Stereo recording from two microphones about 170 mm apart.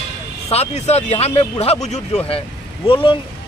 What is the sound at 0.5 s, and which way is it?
Speech, 40° left (ahead or behind).